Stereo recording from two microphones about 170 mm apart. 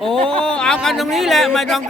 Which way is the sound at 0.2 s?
35° right (ahead or behind).